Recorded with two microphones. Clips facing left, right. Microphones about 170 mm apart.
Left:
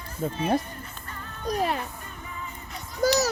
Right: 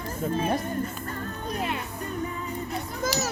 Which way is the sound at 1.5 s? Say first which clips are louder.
Left 5 dB; 35° left (ahead or behind).